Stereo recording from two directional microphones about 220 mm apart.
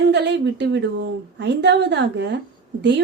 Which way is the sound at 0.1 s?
50° right (ahead or behind).